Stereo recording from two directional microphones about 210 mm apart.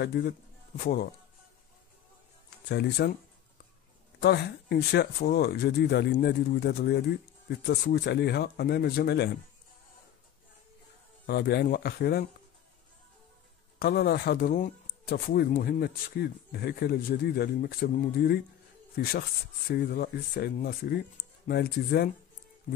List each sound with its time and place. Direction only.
0.0 s speech: 50° left (ahead or behind)
2.7 s speech: 50° left (ahead or behind)
4.2 s speech: 50° left (ahead or behind)
11.2 s speech: 50° left (ahead or behind)
13.7 s speech: 45° left (ahead or behind)